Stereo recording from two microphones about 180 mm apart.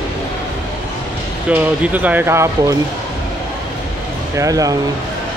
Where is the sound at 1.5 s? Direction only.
10° right (ahead or behind).